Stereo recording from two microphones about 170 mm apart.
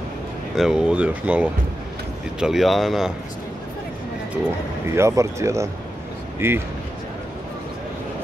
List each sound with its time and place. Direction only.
0.6 s speech: 5° right (ahead or behind)
4.8 s speech: 15° right (ahead or behind)